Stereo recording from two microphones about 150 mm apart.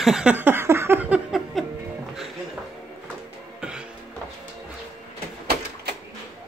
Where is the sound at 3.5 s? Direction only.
5° right (ahead or behind).